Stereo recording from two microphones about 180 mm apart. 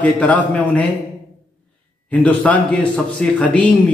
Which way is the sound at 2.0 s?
10° left (ahead or behind).